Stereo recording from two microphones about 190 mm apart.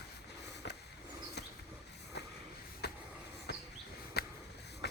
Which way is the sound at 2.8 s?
60° left (ahead or behind).